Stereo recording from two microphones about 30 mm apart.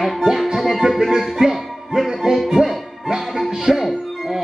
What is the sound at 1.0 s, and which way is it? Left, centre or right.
Music, centre.